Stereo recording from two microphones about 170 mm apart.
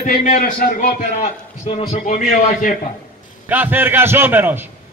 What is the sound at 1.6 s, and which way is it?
A man's voice, 35° left (ahead or behind).